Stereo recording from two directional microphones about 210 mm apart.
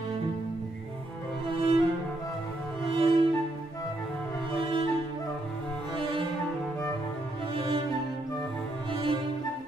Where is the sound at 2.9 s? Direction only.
25° right (ahead or behind).